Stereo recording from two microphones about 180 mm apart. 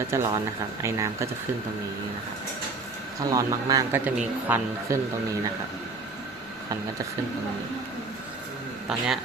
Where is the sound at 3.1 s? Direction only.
20° right (ahead or behind).